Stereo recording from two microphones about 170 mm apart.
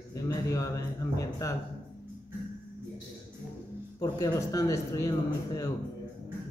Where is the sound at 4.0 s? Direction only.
20° left (ahead or behind).